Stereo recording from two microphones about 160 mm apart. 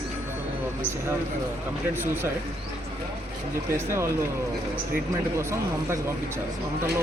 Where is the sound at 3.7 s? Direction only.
15° right (ahead or behind).